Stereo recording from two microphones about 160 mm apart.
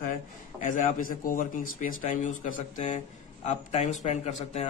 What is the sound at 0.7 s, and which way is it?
A man's voice, 55° left (ahead or behind).